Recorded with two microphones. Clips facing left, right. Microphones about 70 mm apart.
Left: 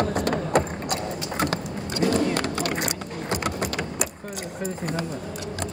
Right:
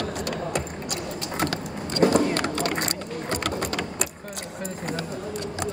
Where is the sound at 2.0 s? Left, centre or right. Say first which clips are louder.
Right 4 dB; right.